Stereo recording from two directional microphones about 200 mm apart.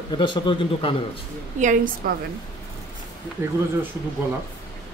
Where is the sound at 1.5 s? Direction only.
40° right (ahead or behind).